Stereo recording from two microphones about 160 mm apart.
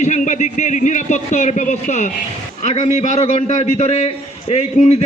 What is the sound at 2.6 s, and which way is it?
A man's voice, 45° left (ahead or behind).